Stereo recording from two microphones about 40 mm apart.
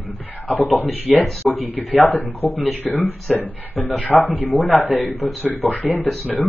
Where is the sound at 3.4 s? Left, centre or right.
Left.